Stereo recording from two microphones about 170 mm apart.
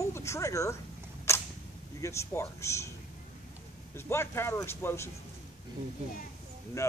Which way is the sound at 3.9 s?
15° left (ahead or behind).